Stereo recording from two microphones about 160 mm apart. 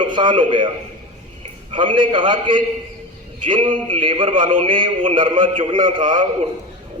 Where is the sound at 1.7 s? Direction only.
30° right (ahead or behind).